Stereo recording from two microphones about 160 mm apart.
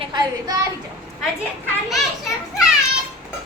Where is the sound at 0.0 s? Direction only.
30° right (ahead or behind).